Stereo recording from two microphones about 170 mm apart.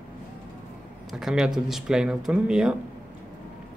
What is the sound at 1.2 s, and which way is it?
Speech, centre (ahead or behind).